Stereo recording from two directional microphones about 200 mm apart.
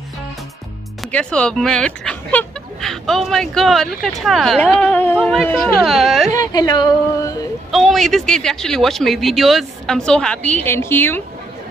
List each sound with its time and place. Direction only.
1.0 s speech: 5° left (ahead or behind)
6.3 s speech: 20° left (ahead or behind)
7.7 s speech: centre (ahead or behind)